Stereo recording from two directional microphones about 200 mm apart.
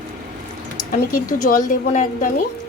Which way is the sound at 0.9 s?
45° left (ahead or behind).